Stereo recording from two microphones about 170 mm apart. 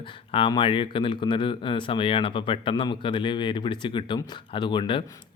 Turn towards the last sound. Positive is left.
turn(degrees=30)  # may be behind; listen again after turning